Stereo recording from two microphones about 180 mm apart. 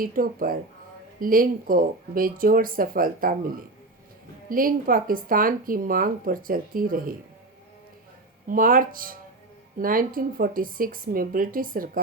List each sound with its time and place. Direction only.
0.0 s speech: 50° right (ahead or behind)
4.4 s speech: 50° right (ahead or behind)
8.4 s speech: 50° right (ahead or behind)